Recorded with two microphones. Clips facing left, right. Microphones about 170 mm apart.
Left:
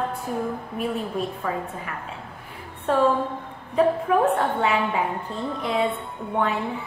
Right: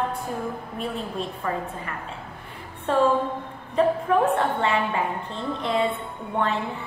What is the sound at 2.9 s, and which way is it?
A woman's voice, centre (ahead or behind).